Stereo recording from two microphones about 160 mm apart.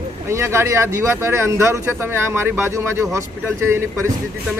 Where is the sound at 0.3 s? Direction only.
15° right (ahead or behind).